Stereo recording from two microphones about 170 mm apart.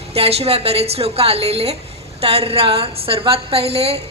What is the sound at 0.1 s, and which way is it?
A woman's voice, 35° right (ahead or behind).